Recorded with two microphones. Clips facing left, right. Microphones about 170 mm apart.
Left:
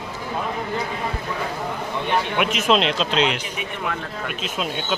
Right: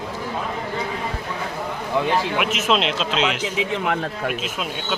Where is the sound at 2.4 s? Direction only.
Centre (ahead or behind).